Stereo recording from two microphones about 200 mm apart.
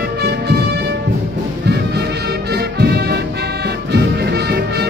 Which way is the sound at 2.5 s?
55° right (ahead or behind).